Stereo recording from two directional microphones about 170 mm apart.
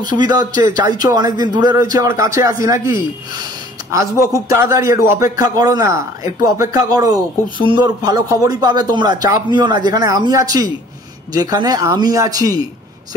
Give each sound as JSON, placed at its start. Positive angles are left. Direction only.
{"t": 0.1, "sound": "speech", "side_deg": -25}
{"t": 3.9, "sound": "speech", "side_deg": -20}